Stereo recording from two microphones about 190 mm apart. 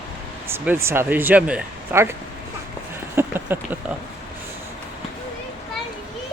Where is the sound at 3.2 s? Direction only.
10° right (ahead or behind).